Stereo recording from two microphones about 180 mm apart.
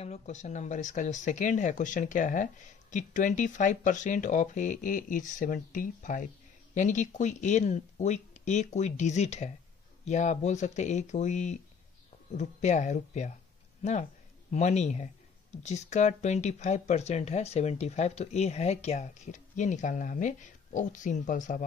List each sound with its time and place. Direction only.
0.0 s speech: 40° left (ahead or behind)
14.5 s speech: 40° left (ahead or behind)